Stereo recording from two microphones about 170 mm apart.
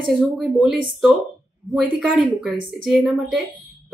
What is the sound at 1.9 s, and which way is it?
Speech, 5° right (ahead or behind).